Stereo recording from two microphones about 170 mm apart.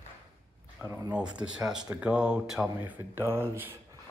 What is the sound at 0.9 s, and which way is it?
Speech, 10° right (ahead or behind).